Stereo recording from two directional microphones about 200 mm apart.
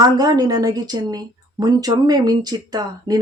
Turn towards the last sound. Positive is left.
turn(degrees=-20)  # may be behind; listen again after turning